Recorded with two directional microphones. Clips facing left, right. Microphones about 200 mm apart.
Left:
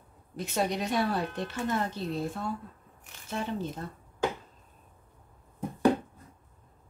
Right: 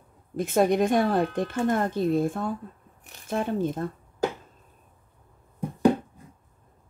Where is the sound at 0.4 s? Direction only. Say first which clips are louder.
Right 9 dB; 50° right (ahead or behind).